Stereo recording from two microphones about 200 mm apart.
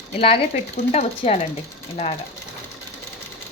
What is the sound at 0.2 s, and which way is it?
Speech, 30° left (ahead or behind).